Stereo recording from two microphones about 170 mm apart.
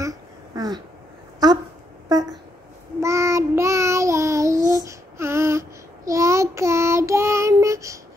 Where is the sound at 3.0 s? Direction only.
15° right (ahead or behind).